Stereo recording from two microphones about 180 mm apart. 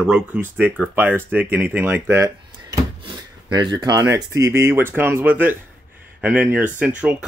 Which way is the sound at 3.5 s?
20° right (ahead or behind).